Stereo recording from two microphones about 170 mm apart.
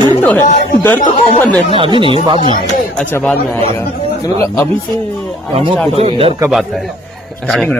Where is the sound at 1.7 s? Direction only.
30° right (ahead or behind).